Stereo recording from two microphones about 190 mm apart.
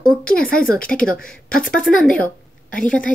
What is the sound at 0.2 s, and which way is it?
Speech, 50° left (ahead or behind).